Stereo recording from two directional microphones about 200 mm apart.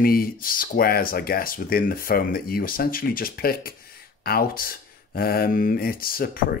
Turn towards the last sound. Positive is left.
turn(degrees=45)  # may be behind; listen again after turning